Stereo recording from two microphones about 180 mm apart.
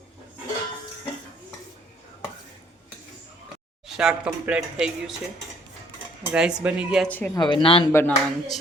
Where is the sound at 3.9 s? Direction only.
5° right (ahead or behind).